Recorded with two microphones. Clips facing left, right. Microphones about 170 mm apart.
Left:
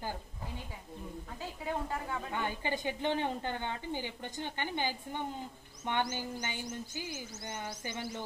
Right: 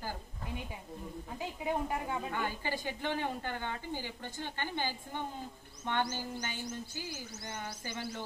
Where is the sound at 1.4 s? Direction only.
15° right (ahead or behind).